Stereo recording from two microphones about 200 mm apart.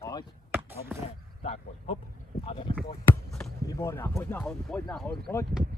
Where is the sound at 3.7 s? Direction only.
15° left (ahead or behind).